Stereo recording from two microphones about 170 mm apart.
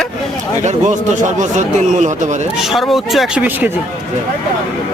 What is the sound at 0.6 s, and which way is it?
Speech, 45° right (ahead or behind).